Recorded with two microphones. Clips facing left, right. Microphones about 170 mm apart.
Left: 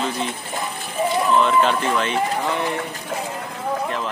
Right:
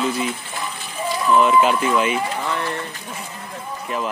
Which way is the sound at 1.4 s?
5° right (ahead or behind).